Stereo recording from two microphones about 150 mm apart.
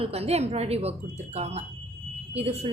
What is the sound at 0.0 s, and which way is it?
A woman's voice, 45° right (ahead or behind).